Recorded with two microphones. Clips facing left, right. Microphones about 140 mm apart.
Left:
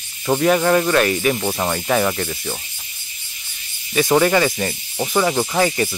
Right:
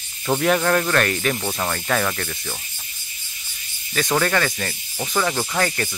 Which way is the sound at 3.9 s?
10° left (ahead or behind).